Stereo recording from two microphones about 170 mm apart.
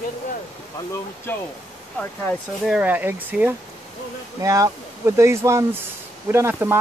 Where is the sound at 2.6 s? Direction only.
5° right (ahead or behind).